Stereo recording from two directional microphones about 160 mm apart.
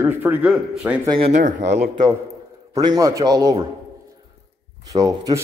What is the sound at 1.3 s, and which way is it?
Speech, 50° right (ahead or behind).